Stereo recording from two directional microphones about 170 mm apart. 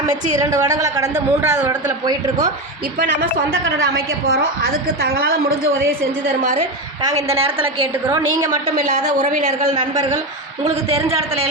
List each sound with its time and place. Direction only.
0.1 s a woman's voice: 20° right (ahead or behind)
4.9 s a woman's voice: 60° right (ahead or behind)
6.4 s a woman's voice: 45° right (ahead or behind)
7.0 s a woman's voice: 20° right (ahead or behind)
7.3 s a man's voice: 35° right (ahead or behind)
8.0 s a woman's voice: 20° right (ahead or behind)
8.7 s a woman's voice: 50° right (ahead or behind)
9.7 s a woman's voice: 25° right (ahead or behind)
10.6 s a man's voice: 35° right (ahead or behind)